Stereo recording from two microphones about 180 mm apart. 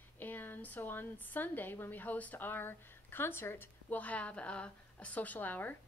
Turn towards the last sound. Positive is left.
turn(degrees=10)  # may be behind; listen again after turning